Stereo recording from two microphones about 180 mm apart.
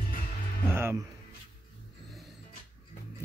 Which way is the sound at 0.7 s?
15° right (ahead or behind).